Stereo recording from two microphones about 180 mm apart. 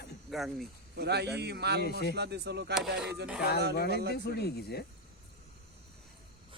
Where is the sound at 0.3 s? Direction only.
Centre (ahead or behind).